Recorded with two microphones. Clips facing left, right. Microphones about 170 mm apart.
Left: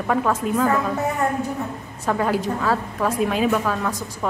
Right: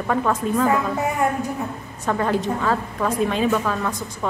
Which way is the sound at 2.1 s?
5° left (ahead or behind).